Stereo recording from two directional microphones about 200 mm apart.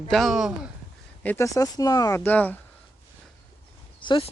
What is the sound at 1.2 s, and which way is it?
Speech, 10° left (ahead or behind).